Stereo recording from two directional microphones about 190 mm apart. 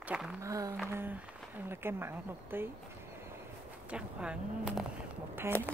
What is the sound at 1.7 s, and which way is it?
Speech, 10° right (ahead or behind).